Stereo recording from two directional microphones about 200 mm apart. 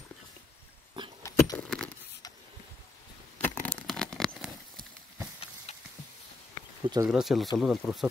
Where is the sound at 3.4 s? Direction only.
10° left (ahead or behind).